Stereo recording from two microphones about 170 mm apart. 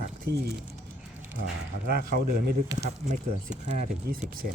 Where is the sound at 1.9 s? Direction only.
65° right (ahead or behind).